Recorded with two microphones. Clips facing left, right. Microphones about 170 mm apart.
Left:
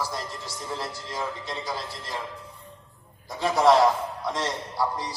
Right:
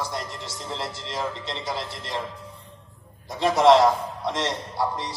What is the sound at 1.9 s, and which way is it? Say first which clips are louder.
Speech: right 3 dB; 20° right (ahead or behind).